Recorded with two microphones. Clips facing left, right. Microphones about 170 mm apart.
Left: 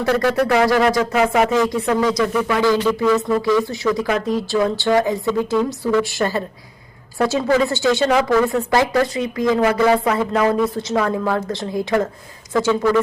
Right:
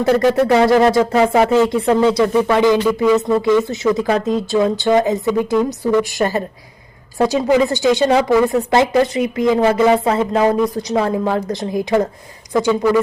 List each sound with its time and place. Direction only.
0.0 s speech: 20° right (ahead or behind)
2.8 s speech: 10° right (ahead or behind)